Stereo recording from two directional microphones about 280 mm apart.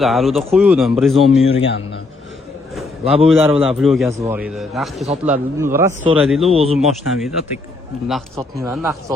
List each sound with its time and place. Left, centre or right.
0.0 s a man's voice: centre
1.6 s a man's voice: left
3.0 s a man's voice: right
3.6 s a man's voice: centre
6.5 s a man's voice: centre
6.7 s a man's voice: centre